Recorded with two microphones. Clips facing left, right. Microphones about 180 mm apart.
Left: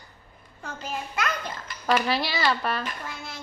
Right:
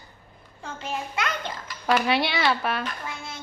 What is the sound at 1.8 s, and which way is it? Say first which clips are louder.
Speech: right 2 dB; centre (ahead or behind).